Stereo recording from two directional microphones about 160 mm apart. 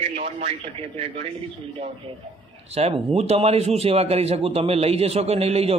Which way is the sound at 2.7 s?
40° right (ahead or behind).